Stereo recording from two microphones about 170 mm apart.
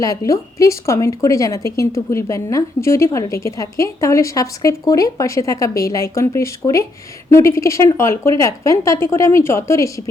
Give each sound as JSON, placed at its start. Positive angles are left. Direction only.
{"t": 0.0, "sound": "a woman's voice", "side_deg": 20}